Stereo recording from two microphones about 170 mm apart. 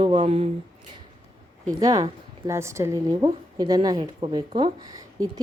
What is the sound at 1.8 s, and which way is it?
Speech, 20° right (ahead or behind).